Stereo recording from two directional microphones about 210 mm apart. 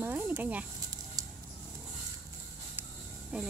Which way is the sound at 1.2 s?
15° right (ahead or behind).